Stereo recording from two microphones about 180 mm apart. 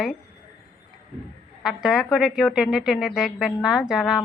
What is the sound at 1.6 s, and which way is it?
A woman's voice, 5° right (ahead or behind).